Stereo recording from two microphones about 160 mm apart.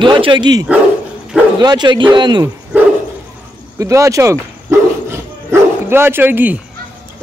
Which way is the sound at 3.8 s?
20° right (ahead or behind).